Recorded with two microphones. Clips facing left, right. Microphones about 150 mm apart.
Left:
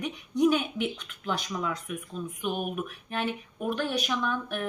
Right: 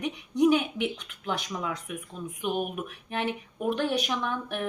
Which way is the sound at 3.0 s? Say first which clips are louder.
Right 3 dB; 20° right (ahead or behind).